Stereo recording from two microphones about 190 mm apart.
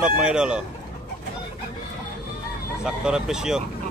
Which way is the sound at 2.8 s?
5° right (ahead or behind).